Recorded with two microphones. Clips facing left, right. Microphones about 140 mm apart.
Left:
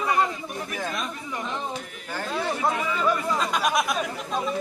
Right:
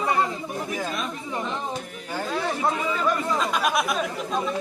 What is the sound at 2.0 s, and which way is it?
Speech, 15° right (ahead or behind).